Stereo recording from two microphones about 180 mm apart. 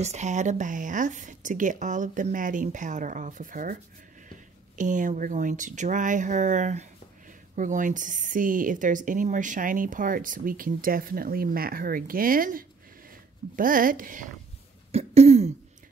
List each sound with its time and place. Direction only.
0.0 s a woman's voice: 40° right (ahead or behind)
4.7 s a woman's voice: 45° right (ahead or behind)
14.9 s throat clearing: 35° right (ahead or behind)